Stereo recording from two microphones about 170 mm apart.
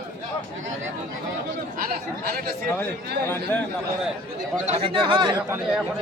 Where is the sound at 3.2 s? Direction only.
10° left (ahead or behind).